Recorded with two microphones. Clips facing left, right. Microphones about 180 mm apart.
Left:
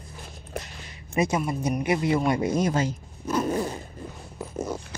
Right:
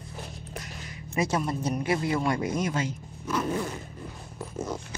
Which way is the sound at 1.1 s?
15° left (ahead or behind).